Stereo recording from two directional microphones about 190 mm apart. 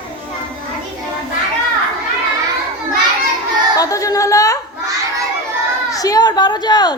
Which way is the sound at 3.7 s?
20° left (ahead or behind).